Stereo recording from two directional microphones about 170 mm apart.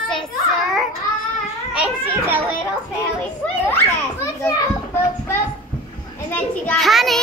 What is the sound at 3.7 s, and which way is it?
Children playing, 15° left (ahead or behind).